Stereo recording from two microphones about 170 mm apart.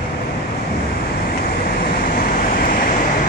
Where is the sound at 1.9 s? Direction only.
60° left (ahead or behind).